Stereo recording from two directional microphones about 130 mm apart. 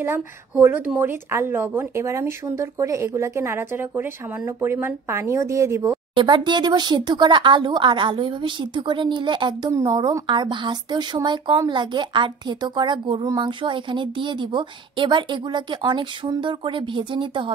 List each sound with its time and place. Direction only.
0.0 s speech: 15° right (ahead or behind)
6.1 s speech: 35° right (ahead or behind)